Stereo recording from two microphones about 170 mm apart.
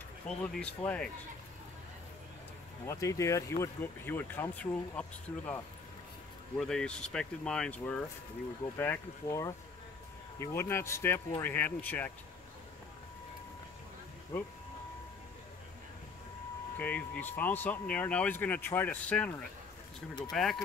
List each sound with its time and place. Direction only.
0.3 s speech: 5° left (ahead or behind)
2.9 s speech: 15° left (ahead or behind)
6.6 s speech: 5° left (ahead or behind)
16.7 s speech: 10° left (ahead or behind)